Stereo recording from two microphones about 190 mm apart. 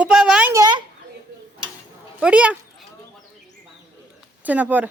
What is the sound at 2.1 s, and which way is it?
Speech, 5° right (ahead or behind).